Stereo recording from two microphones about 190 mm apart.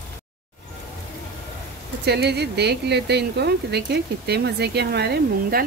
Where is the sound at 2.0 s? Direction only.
60° right (ahead or behind).